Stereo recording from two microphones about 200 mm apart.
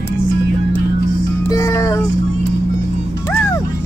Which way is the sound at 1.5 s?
15° left (ahead or behind).